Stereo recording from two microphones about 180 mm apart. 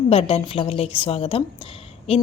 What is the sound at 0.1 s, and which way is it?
A woman's voice, 35° left (ahead or behind).